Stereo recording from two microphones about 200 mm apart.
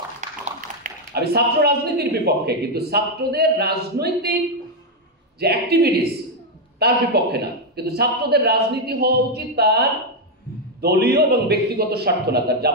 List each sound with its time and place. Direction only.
0.2 s speech: 40° right (ahead or behind)
5.4 s a man's voice: 50° right (ahead or behind)